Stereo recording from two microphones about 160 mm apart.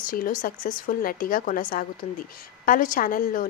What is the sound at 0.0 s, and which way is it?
A woman's voice, 60° left (ahead or behind).